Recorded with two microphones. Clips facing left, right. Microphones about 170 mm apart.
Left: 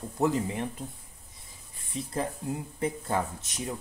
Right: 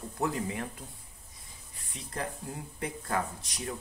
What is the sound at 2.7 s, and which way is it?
Speech, 25° left (ahead or behind).